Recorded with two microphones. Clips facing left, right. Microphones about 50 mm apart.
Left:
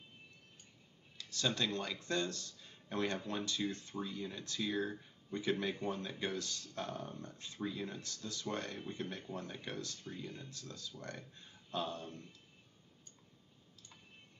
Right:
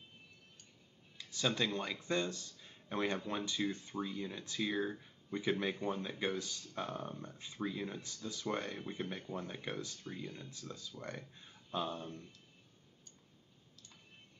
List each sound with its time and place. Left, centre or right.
1.1 s speech: centre
10.2 s speech: centre
10.5 s speech: centre